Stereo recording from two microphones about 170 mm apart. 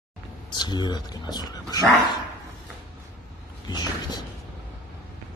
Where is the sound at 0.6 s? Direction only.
25° left (ahead or behind).